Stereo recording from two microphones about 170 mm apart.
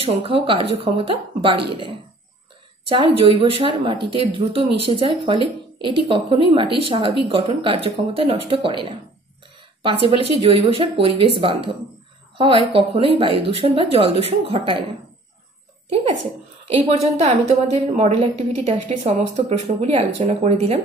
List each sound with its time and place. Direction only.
0.0 s a woman's voice: 35° right (ahead or behind)
2.9 s a woman's voice: 30° right (ahead or behind)
9.8 s a woman's voice: 35° right (ahead or behind)
16.6 s a woman's voice: 40° right (ahead or behind)